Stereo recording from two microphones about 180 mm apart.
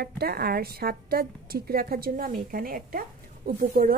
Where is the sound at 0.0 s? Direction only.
60° right (ahead or behind).